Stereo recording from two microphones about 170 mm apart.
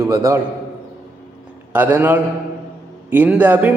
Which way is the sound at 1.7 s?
10° right (ahead or behind).